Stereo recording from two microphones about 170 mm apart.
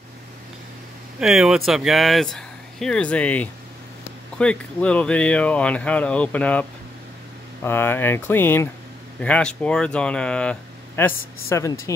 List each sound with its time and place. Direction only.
1.2 s speech: centre (ahead or behind)
7.6 s speech: 15° left (ahead or behind)